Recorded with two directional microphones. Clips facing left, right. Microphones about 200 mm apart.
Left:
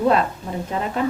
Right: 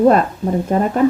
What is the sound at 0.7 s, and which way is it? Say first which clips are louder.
Speech: right 9 dB; 50° right (ahead or behind).